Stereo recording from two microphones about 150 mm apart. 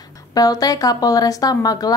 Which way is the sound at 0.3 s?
25° left (ahead or behind).